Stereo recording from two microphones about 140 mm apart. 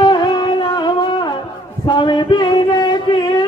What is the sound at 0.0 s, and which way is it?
Music, 35° left (ahead or behind).